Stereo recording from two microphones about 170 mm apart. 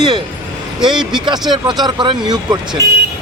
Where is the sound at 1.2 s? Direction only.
25° right (ahead or behind).